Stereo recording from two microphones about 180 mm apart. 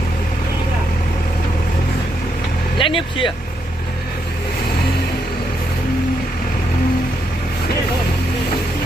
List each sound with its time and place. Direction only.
2.8 s speech: 30° left (ahead or behind)